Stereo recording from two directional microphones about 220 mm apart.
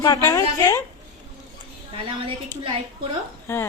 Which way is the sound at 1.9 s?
25° right (ahead or behind).